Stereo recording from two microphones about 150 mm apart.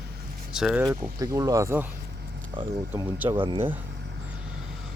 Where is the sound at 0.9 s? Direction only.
25° right (ahead or behind).